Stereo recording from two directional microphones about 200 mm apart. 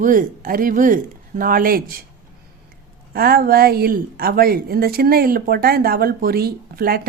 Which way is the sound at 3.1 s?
50° right (ahead or behind).